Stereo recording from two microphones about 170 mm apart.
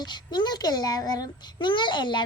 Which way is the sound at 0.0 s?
25° left (ahead or behind).